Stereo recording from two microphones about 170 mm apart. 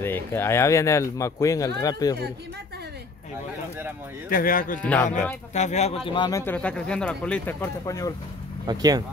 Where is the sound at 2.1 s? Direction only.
75° right (ahead or behind).